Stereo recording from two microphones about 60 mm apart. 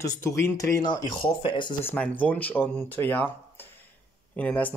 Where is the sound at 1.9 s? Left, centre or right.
Left.